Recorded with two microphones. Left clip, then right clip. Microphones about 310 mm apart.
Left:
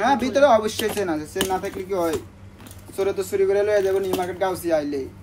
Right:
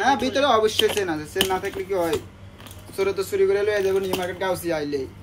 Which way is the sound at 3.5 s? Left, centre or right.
Centre.